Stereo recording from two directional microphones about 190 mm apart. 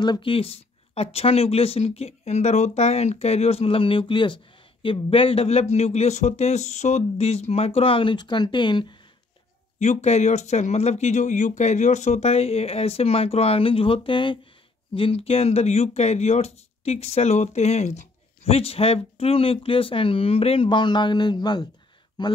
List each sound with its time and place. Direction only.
0.0 s speech: 25° left (ahead or behind)
9.8 s speech: 35° left (ahead or behind)